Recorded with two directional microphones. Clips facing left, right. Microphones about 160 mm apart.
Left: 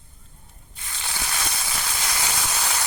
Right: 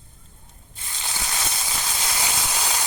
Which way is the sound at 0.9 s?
20° right (ahead or behind).